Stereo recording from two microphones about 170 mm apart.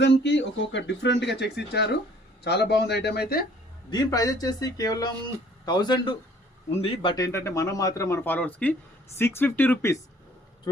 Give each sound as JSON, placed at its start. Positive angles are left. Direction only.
{"t": 0.0, "sound": "speech", "side_deg": 90}
{"t": 3.8, "sound": "a man's voice", "side_deg": 20}